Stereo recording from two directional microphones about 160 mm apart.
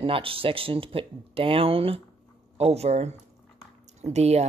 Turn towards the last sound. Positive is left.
turn(degrees=-45)  # may be behind; listen again after turning